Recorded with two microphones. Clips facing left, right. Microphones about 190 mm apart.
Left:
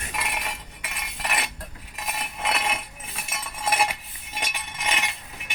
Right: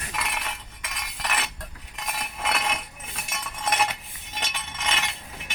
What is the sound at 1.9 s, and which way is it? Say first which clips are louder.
Chink: left 1 dB; 5° left (ahead or behind).